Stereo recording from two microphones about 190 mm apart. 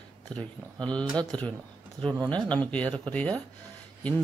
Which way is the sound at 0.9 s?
5° left (ahead or behind).